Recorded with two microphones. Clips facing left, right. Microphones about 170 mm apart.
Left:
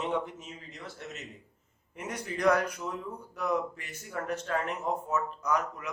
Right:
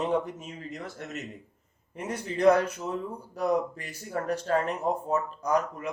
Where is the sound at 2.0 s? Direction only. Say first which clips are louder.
Right 5 dB; 30° right (ahead or behind).